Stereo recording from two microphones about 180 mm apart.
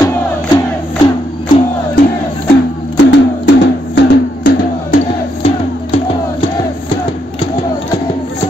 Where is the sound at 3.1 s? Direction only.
75° left (ahead or behind).